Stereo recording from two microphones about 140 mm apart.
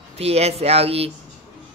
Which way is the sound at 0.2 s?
50° right (ahead or behind).